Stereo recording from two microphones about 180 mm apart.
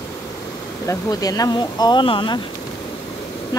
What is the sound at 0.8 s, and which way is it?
Speech, 20° left (ahead or behind).